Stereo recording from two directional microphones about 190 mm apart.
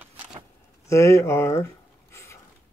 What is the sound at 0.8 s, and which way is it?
Speech, 15° left (ahead or behind).